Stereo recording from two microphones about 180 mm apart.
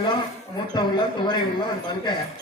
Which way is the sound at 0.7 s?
25° left (ahead or behind).